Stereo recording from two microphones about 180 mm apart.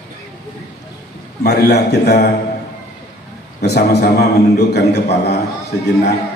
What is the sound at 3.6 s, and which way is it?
A man's voice, 65° left (ahead or behind).